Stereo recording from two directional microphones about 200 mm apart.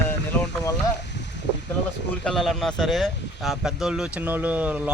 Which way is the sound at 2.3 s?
Centre (ahead or behind).